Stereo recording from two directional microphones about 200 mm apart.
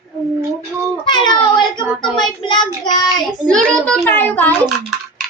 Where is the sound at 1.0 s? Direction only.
20° left (ahead or behind).